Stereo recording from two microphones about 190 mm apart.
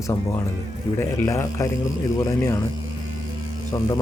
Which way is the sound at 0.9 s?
15° left (ahead or behind).